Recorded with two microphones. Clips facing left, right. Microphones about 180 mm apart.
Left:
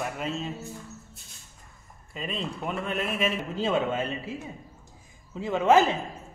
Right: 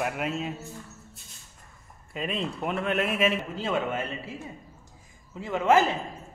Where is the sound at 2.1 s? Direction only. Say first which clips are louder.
Right 2 dB; 5° right (ahead or behind).